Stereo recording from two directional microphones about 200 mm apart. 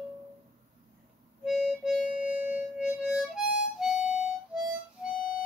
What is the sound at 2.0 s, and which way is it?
Harmonica, 40° left (ahead or behind).